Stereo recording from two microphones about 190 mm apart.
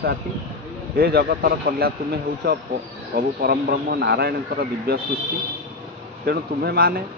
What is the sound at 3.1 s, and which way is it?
Speech, 55° right (ahead or behind).